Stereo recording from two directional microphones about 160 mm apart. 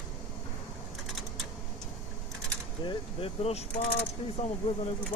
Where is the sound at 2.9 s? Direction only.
35° left (ahead or behind).